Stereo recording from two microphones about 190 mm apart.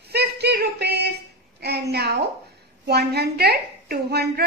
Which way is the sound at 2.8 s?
60° right (ahead or behind).